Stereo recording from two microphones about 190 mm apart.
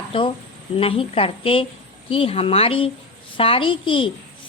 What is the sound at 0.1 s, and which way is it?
A woman's voice, 25° left (ahead or behind).